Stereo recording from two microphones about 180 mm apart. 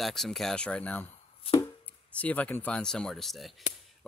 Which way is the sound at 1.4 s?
25° left (ahead or behind).